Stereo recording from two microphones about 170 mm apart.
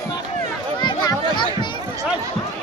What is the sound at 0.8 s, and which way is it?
Children playing, 25° left (ahead or behind).